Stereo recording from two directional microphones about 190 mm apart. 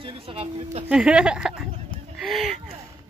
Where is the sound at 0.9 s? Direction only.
5° right (ahead or behind).